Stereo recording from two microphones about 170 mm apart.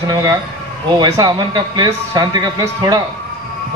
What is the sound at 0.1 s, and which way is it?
A man's voice, 20° right (ahead or behind).